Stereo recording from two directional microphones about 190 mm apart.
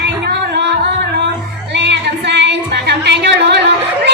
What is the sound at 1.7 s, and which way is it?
Music, 65° right (ahead or behind).